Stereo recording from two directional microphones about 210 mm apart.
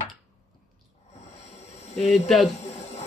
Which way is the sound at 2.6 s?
30° left (ahead or behind).